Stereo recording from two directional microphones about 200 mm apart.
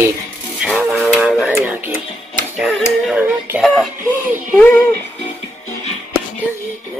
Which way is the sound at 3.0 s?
10° right (ahead or behind).